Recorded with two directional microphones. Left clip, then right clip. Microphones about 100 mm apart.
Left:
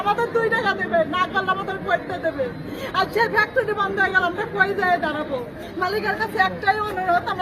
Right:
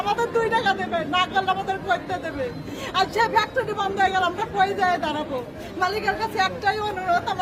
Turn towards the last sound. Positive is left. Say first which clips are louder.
# left 2 dB
turn(degrees=-20)  # may be behind; listen again after turning